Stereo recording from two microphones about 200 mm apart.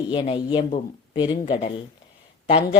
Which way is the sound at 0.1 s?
25° left (ahead or behind).